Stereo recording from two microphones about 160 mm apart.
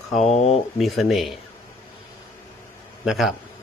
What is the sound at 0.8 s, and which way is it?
Speech, centre (ahead or behind).